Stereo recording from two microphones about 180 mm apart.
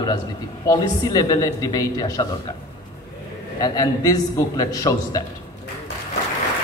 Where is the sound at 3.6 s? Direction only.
20° left (ahead or behind).